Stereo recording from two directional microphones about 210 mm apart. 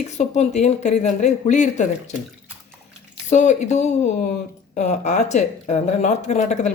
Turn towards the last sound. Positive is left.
turn(degrees=35)  # may be behind; listen again after turning